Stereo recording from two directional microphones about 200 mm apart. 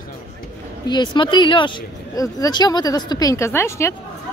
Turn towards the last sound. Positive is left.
turn(degrees=15)  # may be behind; listen again after turning